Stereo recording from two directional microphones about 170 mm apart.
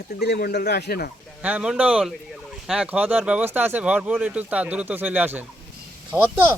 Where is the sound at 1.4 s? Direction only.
5° right (ahead or behind).